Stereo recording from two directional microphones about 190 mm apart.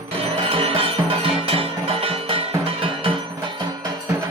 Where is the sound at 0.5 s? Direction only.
30° right (ahead or behind).